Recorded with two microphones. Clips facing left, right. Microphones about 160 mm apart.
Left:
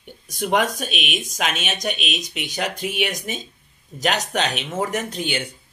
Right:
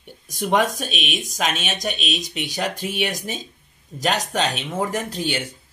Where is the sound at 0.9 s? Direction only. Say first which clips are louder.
Even; centre (ahead or behind).